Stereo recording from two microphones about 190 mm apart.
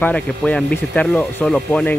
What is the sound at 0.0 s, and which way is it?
Speech, 5° left (ahead or behind).